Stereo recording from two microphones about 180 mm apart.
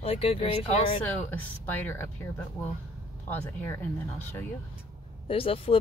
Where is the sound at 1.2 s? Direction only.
10° left (ahead or behind).